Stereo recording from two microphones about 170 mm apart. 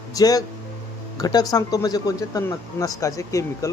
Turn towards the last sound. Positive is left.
turn(degrees=20)  # may be behind; listen again after turning